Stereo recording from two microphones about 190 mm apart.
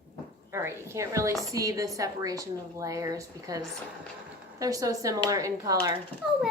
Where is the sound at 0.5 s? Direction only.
15° right (ahead or behind).